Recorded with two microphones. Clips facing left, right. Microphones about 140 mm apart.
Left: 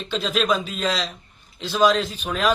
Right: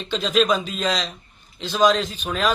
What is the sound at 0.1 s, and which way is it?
A man's voice, 5° left (ahead or behind).